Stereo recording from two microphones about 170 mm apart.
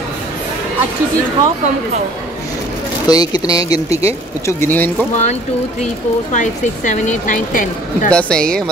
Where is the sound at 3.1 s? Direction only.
25° left (ahead or behind).